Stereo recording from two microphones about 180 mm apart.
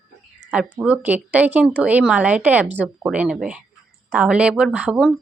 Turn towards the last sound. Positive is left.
turn(degrees=-5)  # may be behind; listen again after turning